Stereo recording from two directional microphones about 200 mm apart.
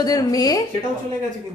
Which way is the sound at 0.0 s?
20° left (ahead or behind).